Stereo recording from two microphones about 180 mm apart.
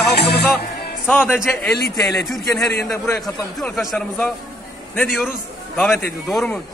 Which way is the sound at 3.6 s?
Centre (ahead or behind).